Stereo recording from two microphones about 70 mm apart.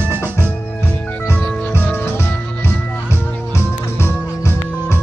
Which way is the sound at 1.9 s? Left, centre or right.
Left.